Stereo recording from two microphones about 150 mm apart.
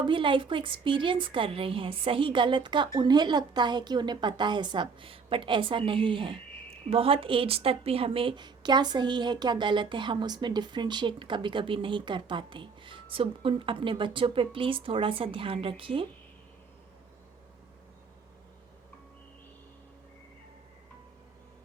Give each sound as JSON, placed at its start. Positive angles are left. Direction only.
{"t": 0.0, "sound": "a woman's voice", "side_deg": -35}